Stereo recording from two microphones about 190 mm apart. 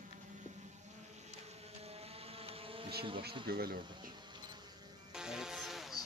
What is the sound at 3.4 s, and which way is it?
Speech, 55° right (ahead or behind).